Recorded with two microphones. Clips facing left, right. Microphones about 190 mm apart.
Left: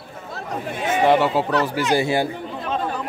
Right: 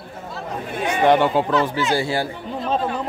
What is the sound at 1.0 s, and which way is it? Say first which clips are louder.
Speech: right 2 dB; 5° left (ahead or behind).